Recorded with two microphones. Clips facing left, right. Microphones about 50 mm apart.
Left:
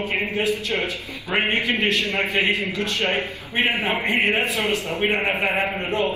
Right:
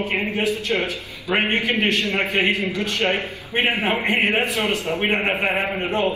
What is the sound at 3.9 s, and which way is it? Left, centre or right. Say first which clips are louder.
A man's voice: right 1 dB; centre.